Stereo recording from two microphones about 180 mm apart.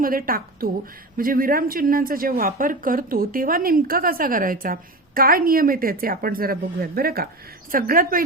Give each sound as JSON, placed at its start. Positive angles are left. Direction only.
{"t": 0.0, "sound": "speech", "side_deg": -50}